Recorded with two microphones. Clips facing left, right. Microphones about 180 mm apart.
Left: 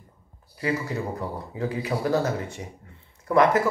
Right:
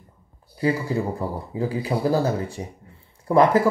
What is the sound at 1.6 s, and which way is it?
Speech, 30° right (ahead or behind).